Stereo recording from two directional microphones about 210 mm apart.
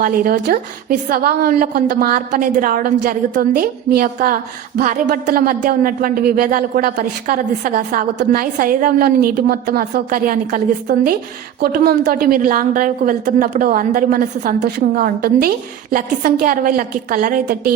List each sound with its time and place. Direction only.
0.0 s speech: 45° right (ahead or behind)